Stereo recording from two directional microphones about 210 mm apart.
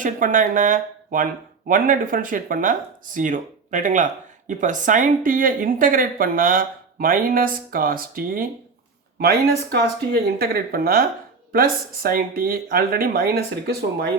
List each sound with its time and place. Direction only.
0.0 s speech: 40° right (ahead or behind)
10.1 s speech: 45° right (ahead or behind)